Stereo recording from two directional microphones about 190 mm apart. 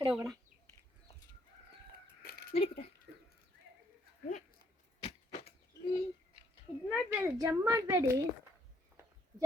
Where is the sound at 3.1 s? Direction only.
65° right (ahead or behind).